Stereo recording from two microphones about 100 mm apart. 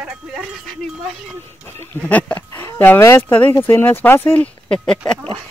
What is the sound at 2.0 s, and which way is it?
Speech, 15° left (ahead or behind).